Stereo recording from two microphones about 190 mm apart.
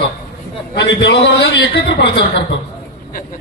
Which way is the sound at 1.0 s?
60° left (ahead or behind).